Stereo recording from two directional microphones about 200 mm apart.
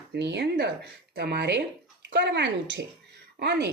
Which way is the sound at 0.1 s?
60° right (ahead or behind).